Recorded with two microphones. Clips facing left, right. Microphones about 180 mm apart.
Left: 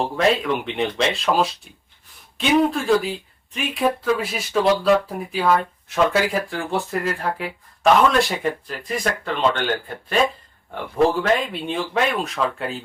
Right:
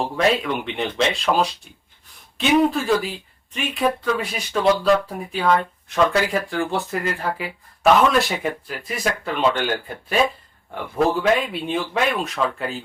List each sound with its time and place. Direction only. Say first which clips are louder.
0.0 s speech: left 1 dB; centre (ahead or behind)